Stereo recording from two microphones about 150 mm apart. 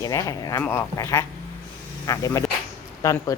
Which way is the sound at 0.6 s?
20° left (ahead or behind).